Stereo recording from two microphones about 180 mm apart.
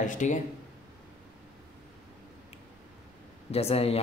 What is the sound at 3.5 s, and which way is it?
Speech, 35° left (ahead or behind).